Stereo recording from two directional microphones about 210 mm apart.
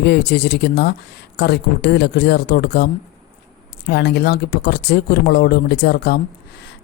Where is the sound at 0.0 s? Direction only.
50° left (ahead or behind).